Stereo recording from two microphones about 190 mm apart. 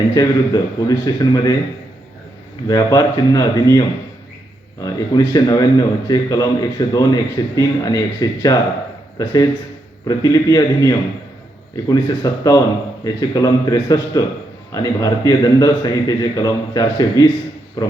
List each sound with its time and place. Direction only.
0.1 s speech: 20° left (ahead or behind)
2.6 s a man's voice: 20° left (ahead or behind)